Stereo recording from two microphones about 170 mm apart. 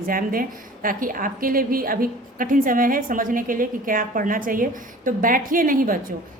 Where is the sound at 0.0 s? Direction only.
55° right (ahead or behind).